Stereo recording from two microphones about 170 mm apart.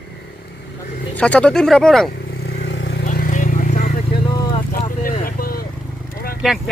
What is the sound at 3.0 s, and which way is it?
Vehicle, 50° left (ahead or behind).